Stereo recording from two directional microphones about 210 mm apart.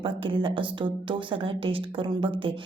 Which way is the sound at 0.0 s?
25° right (ahead or behind).